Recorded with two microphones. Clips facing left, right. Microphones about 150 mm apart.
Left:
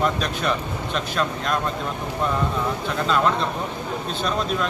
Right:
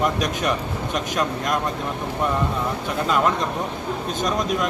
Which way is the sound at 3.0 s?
10° right (ahead or behind).